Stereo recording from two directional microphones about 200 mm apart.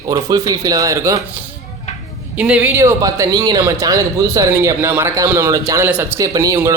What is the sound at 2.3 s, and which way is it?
Speech, 5° right (ahead or behind).